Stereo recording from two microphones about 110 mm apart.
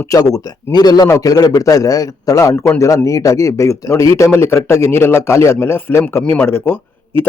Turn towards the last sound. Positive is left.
turn(degrees=20)  # may be behind; listen again after turning